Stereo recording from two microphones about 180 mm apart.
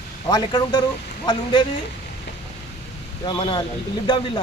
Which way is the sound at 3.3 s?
25° left (ahead or behind).